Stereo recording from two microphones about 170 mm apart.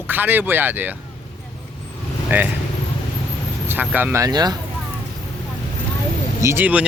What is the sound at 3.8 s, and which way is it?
Speech, 10° right (ahead or behind).